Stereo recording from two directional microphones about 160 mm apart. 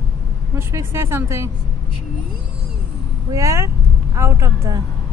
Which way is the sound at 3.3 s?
20° right (ahead or behind).